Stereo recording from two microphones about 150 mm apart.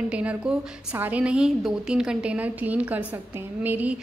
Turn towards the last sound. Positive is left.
turn(degrees=-10)  # may be behind; listen again after turning